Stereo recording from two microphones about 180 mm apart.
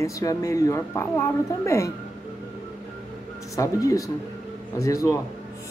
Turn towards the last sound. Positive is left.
turn(degrees=20)  # may be behind; listen again after turning